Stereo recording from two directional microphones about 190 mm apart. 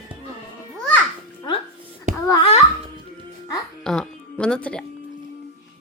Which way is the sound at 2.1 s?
40° right (ahead or behind).